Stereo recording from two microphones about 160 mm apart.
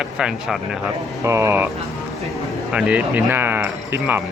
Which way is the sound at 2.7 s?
5° right (ahead or behind).